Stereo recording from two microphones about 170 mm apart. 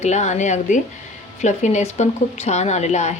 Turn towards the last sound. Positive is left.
turn(degrees=40)  # may be behind; listen again after turning